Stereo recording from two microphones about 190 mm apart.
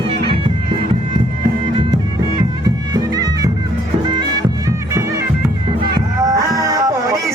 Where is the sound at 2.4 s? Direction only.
20° right (ahead or behind).